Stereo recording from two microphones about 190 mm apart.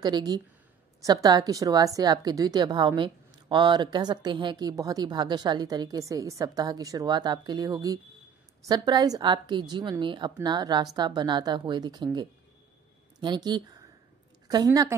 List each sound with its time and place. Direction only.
0.0 s a woman's voice: 20° right (ahead or behind)